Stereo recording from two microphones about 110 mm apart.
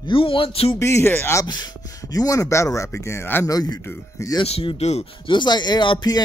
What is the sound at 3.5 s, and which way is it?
Speech, 35° left (ahead or behind).